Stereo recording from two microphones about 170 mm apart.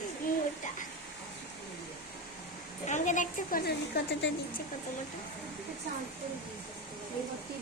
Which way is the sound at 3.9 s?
80° left.